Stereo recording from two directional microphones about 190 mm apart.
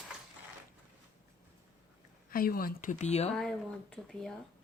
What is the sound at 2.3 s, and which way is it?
Speech, 50° left (ahead or behind).